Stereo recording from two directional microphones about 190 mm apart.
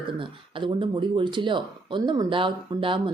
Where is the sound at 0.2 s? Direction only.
25° right (ahead or behind).